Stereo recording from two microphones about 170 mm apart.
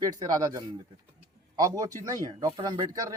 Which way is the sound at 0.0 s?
20° right (ahead or behind).